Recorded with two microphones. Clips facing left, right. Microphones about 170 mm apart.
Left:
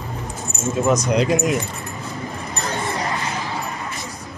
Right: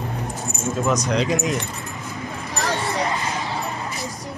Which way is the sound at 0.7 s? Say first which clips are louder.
Left 3 dB; 5° left (ahead or behind).